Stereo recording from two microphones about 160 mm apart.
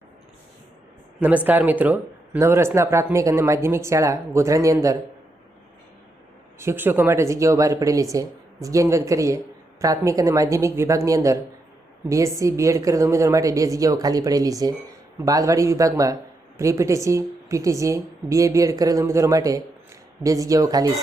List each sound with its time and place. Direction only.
1.5 s speech: 10° right (ahead or behind)
6.6 s a woman's voice: 15° right (ahead or behind)